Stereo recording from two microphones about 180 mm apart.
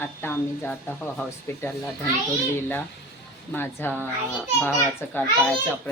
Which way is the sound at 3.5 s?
10° left (ahead or behind).